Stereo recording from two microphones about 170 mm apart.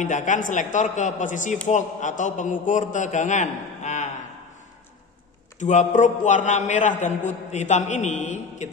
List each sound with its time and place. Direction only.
0.0 s a man's voice: 45° left (ahead or behind)
5.6 s a man's voice: 45° left (ahead or behind)